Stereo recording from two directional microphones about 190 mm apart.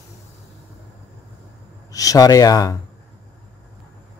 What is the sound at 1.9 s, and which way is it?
Speech, 20° left (ahead or behind).